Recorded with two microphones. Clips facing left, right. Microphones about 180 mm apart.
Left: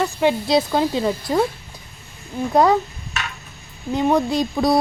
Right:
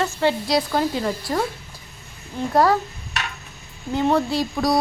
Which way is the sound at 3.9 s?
15° left (ahead or behind).